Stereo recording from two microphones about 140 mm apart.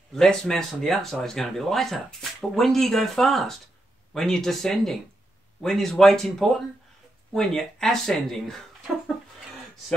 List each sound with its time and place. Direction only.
0.1 s speech: 5° left (ahead or behind)